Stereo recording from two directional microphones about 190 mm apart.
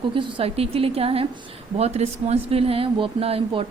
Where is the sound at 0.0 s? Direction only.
25° right (ahead or behind).